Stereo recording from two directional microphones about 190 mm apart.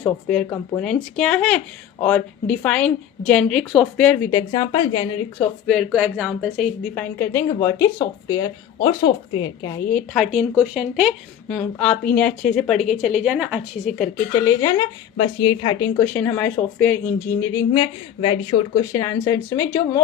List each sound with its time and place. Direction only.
0.8 s speech: 5° left (ahead or behind); by 5.5 s 25° left (ahead or behind)
5.6 s speech: centre (ahead or behind)
6.9 s speech: 10° left (ahead or behind)
9.9 s speech: centre (ahead or behind)
11.4 s speech: 5° left (ahead or behind)
14.4 s speech: 20° left (ahead or behind)
18.2 s speech: 25° left (ahead or behind)